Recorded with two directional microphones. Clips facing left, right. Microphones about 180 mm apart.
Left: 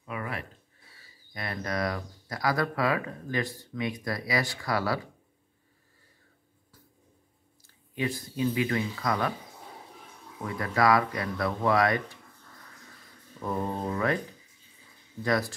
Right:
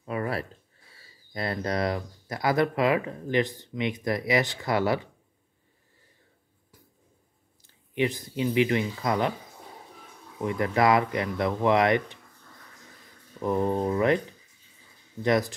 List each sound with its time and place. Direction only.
0.0 s a sound: 35° right (ahead or behind)
1.3 s speech: 30° right (ahead or behind)
7.6 s speech: 20° right (ahead or behind)
10.4 s speech: 20° right (ahead or behind)
13.4 s speech: 20° right (ahead or behind)
15.2 s speech: 20° right (ahead or behind)